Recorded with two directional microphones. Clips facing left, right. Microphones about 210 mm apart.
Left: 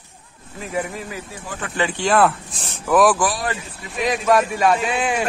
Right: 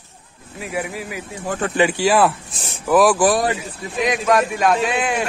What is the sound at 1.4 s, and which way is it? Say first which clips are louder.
Speech: right 12 dB; 45° right (ahead or behind).